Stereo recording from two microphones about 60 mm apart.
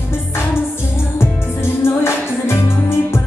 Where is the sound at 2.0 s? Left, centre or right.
Left.